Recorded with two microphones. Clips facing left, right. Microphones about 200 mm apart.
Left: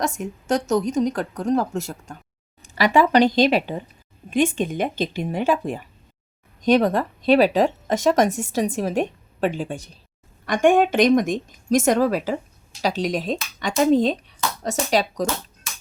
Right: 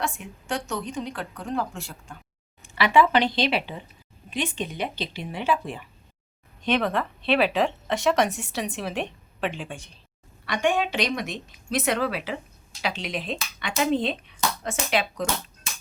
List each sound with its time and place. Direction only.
0.0 s speech: 40° left (ahead or behind)